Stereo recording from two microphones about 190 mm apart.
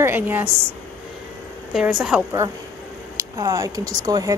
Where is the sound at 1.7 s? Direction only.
5° right (ahead or behind).